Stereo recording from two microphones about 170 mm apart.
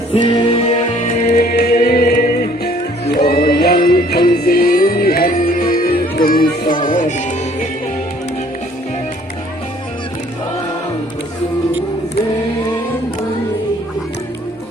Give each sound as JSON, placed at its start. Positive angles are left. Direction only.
{"t": 0.1, "sound": "music", "side_deg": 35}
{"t": 1.0, "sound": "music", "side_deg": 55}